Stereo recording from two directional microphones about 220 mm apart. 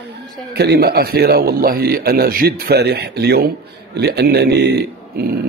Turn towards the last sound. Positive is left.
turn(degrees=-45)  # may be behind; listen again after turning